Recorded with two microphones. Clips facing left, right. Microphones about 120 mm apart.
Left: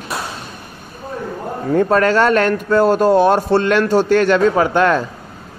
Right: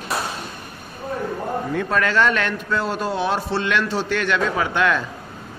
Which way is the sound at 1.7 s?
40° left (ahead or behind).